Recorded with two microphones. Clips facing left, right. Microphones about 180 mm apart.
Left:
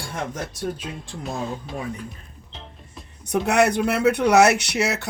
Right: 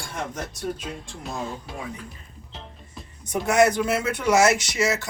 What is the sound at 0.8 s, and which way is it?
Speech, centre (ahead or behind).